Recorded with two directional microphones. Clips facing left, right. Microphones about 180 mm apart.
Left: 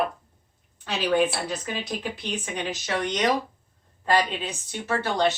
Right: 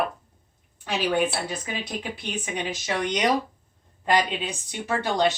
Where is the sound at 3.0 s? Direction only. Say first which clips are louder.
Right 1 dB; 15° right (ahead or behind).